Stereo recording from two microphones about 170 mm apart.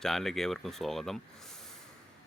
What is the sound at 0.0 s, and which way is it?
Speech, centre (ahead or behind).